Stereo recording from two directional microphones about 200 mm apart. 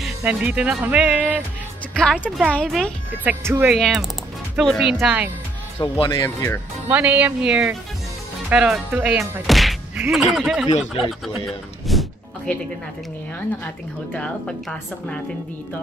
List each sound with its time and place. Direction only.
0.0 s speech: 5° right (ahead or behind)
2.0 s speech: 5° left (ahead or behind)
3.3 s speech: 10° right (ahead or behind)
5.8 s a man's voice: 25° left (ahead or behind)
6.2 s speech: 10° left (ahead or behind)
6.9 s speech: 10° right (ahead or behind)
9.5 s whack: centre (ahead or behind)
10.1 s speech: centre (ahead or behind)
11.9 s a sound: centre (ahead or behind)
14.1 s speech: 5° left (ahead or behind)